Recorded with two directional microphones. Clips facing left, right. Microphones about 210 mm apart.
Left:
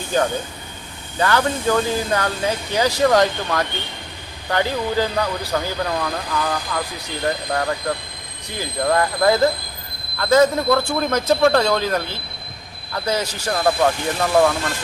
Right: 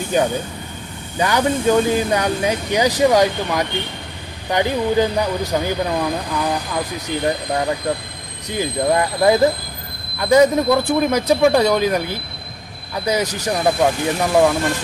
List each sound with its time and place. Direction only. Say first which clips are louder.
0.1 s speech: right 1 dB; 15° right (ahead or behind)
8.4 s speech: right 3 dB; 20° right (ahead or behind)